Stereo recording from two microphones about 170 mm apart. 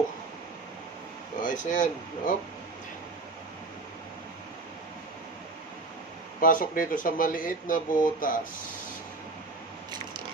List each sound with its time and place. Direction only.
1.4 s speech: 50° left (ahead or behind)
6.4 s speech: 55° left (ahead or behind)